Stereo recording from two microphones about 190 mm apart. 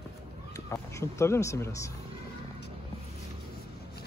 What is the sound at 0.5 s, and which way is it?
Speech, 15° left (ahead or behind).